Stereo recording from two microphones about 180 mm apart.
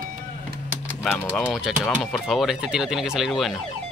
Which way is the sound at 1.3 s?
Centre (ahead or behind).